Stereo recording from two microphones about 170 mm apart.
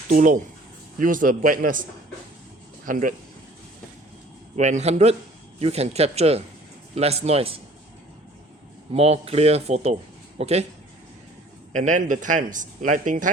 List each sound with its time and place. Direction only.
0.1 s a man's voice: 50° right (ahead or behind)
2.8 s a man's voice: 55° right (ahead or behind)
4.5 s speech: 45° right (ahead or behind)
8.9 s speech: 40° right (ahead or behind)
11.7 s a man's voice: 45° right (ahead or behind)